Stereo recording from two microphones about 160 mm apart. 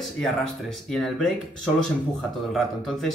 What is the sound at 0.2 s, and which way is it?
Speech, 5° left (ahead or behind).